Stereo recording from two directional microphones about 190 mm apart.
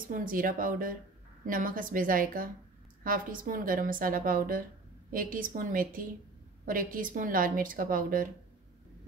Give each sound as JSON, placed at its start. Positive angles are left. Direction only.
{"t": 0.1, "sound": "a woman's voice", "side_deg": -45}